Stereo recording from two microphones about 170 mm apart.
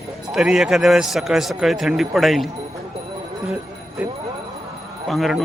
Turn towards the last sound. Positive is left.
turn(degrees=0)  # may be behind; listen again after turning